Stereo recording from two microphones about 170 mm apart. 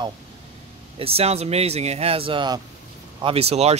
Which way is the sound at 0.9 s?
35° right (ahead or behind).